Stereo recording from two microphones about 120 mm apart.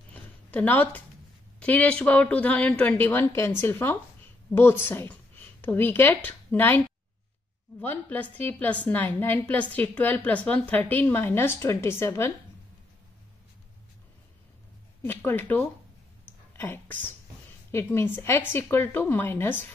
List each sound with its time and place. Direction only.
0.1 s a sound: 15° left (ahead or behind)
1.6 s a woman's voice: 10° left (ahead or behind)
7.8 s a woman's voice: 15° left (ahead or behind)
15.0 s a woman's voice: 15° left (ahead or behind)